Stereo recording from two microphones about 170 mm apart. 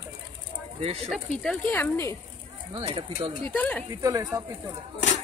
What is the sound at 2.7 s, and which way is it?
Speech, 30° right (ahead or behind).